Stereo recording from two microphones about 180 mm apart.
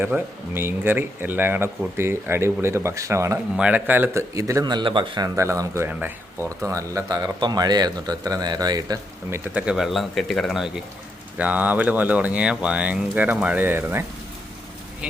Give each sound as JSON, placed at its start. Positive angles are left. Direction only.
{"t": 0.0, "sound": "speech", "side_deg": -10}
{"t": 9.6, "sound": "a man's voice", "side_deg": -5}